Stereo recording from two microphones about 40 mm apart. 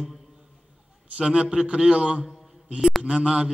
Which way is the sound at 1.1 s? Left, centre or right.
Centre.